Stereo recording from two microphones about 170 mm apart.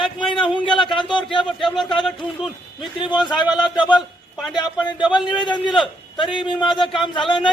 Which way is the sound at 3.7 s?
25° left (ahead or behind).